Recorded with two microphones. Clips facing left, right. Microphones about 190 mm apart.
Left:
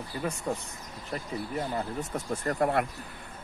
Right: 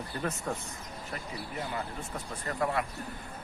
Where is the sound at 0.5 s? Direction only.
10° left (ahead or behind).